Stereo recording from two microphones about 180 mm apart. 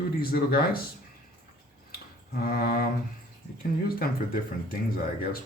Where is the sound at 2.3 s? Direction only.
55° left (ahead or behind).